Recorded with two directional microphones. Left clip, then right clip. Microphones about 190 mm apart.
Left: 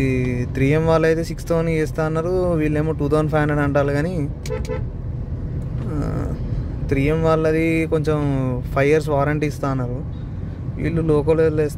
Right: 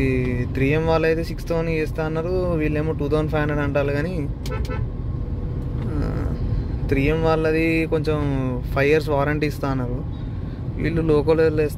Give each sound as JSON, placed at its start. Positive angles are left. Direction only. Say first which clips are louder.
{"t": 0.0, "sound": "speech", "louder": "left 1 dB", "side_deg": 20}
{"t": 5.9, "sound": "a sound", "louder": "left 2 dB", "side_deg": 20}
{"t": 6.9, "sound": "speech", "louder": "left 1 dB", "side_deg": 20}